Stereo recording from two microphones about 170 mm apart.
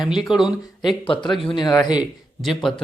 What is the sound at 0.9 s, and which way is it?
Speech, 30° left (ahead or behind).